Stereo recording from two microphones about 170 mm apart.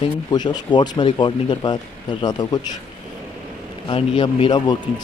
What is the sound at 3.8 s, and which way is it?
Speech, 30° left (ahead or behind).